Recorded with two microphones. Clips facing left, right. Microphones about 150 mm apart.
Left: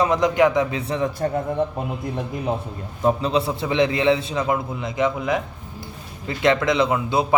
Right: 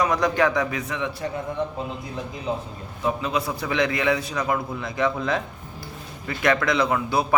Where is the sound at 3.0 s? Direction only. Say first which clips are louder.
Left 5 dB; 35° left (ahead or behind).